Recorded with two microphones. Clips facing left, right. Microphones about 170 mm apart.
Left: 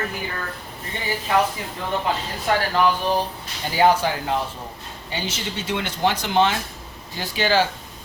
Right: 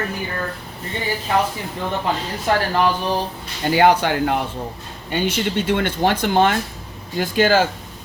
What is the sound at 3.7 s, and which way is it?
Speech, 65° right (ahead or behind).